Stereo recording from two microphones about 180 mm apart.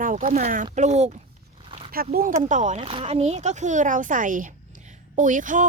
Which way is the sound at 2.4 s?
45° right (ahead or behind).